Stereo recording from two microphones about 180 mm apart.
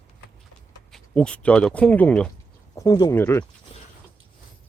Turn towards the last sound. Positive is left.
turn(degrees=15)  # may be behind; listen again after turning